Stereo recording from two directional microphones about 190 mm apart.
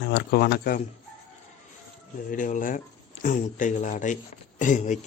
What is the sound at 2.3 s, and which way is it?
A man's voice, 45° left (ahead or behind).